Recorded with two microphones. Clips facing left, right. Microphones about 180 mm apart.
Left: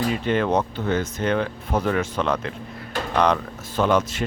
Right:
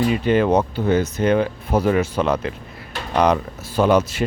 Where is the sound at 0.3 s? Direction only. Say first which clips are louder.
Right 4 dB; 10° right (ahead or behind).